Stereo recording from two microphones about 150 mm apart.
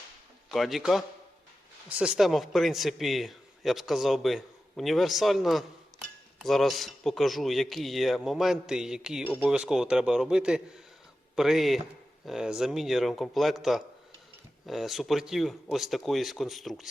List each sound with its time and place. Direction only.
0.5 s a man's voice: centre (ahead or behind)